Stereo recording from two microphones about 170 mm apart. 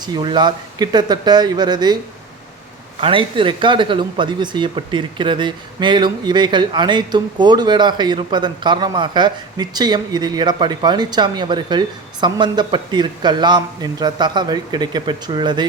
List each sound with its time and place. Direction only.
0.0 s speech: 25° right (ahead or behind)
3.0 s speech: 30° right (ahead or behind)